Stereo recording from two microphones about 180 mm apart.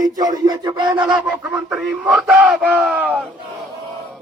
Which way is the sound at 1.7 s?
5° right (ahead or behind).